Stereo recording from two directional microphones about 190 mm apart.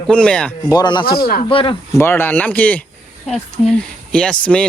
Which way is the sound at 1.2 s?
55° left (ahead or behind).